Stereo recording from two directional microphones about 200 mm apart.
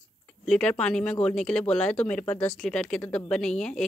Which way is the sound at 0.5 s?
5° left (ahead or behind).